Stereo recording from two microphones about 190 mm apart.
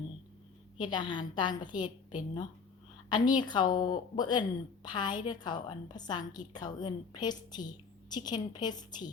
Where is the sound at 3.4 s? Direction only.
25° left (ahead or behind).